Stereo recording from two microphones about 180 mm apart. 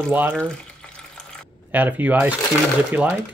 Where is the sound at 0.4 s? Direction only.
5° left (ahead or behind).